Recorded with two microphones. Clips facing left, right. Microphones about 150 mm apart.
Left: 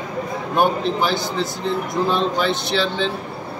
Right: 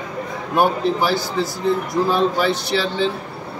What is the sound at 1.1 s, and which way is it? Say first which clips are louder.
Speech: right 1 dB; 20° left (ahead or behind).